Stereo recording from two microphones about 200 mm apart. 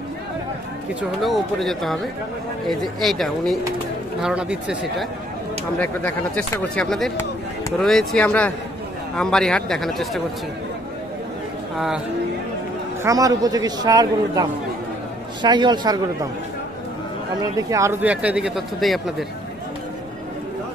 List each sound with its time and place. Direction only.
1.2 s a man's voice: centre (ahead or behind)
5.8 s a man's voice: 10° left (ahead or behind)
11.7 s speech: centre (ahead or behind)
13.0 s a man's voice: 15° right (ahead or behind)
17.4 s speech: 15° right (ahead or behind); by 19.2 s centre (ahead or behind)